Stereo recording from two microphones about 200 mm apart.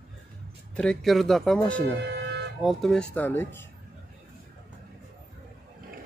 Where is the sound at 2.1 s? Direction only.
55° right (ahead or behind).